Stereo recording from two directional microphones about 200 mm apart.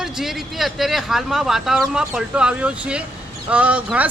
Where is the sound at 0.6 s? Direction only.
Centre (ahead or behind).